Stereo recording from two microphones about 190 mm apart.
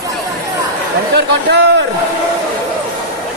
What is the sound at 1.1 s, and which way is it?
Speech, 65° right (ahead or behind).